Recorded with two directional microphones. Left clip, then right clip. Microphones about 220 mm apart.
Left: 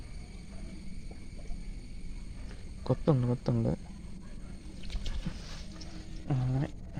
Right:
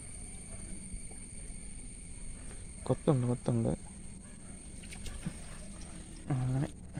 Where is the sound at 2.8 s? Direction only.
5° right (ahead or behind).